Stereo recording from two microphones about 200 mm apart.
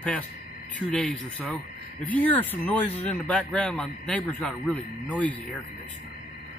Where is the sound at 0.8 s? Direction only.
5° left (ahead or behind).